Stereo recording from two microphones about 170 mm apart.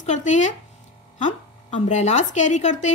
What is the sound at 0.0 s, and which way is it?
Speech, 45° left (ahead or behind).